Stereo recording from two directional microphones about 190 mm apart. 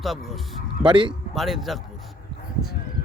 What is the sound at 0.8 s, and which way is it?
Speech, 25° right (ahead or behind).